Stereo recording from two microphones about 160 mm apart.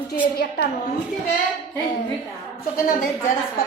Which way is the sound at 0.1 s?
85° left.